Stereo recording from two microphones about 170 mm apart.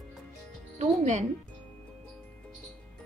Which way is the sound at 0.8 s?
45° right (ahead or behind).